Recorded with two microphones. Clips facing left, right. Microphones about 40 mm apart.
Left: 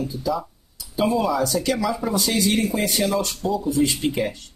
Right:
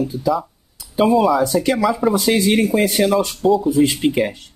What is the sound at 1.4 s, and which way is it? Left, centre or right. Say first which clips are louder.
Speech: right 5 dB; right.